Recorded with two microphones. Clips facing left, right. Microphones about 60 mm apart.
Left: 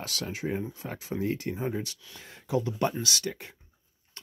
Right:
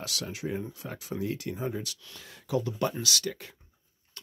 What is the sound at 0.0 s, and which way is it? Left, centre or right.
Speech, left.